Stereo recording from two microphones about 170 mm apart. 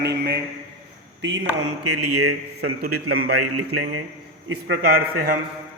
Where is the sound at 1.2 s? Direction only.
90° right.